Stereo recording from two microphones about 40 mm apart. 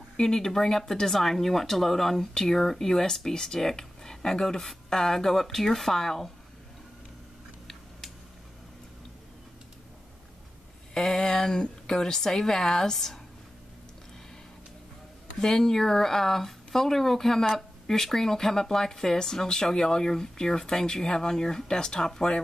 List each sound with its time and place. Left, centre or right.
0.2 s speech: centre
11.0 s speech: centre
15.4 s speech: centre